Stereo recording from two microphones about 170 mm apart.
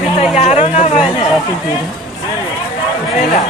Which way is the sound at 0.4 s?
40° left (ahead or behind).